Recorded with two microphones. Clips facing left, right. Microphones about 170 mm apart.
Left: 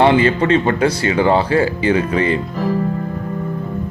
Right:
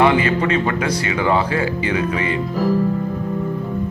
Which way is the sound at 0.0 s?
30° left (ahead or behind).